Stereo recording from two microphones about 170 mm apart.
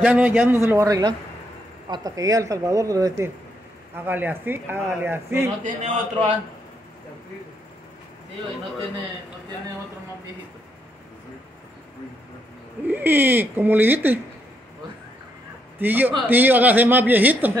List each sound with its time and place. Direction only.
0.0 s a man's voice: 10° right (ahead or behind)
5.6 s a man's voice: 40° right (ahead or behind)
12.8 s a man's voice: 10° right (ahead or behind)
15.8 s a man's voice: 10° right (ahead or behind)